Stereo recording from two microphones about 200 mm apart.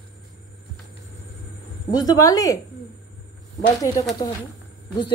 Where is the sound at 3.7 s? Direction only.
15° left (ahead or behind).